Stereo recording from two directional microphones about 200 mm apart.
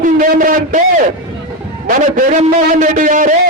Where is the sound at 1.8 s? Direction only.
45° right (ahead or behind).